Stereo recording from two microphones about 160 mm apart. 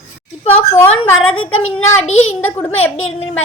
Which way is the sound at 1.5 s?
40° left (ahead or behind).